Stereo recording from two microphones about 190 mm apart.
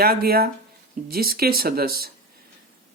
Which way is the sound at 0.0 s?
50° right (ahead or behind).